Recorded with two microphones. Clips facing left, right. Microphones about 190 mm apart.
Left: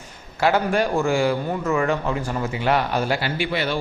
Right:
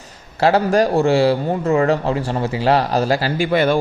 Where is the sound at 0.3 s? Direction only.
35° right (ahead or behind).